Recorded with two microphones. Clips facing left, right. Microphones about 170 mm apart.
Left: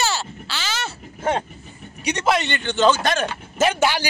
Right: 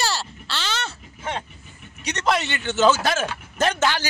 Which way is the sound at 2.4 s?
5° right (ahead or behind).